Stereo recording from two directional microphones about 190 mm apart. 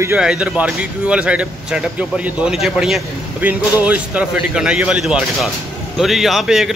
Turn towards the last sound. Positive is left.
turn(degrees=0)  # may be behind; listen again after turning